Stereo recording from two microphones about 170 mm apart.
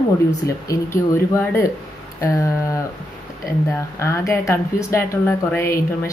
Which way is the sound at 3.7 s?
15° left (ahead or behind).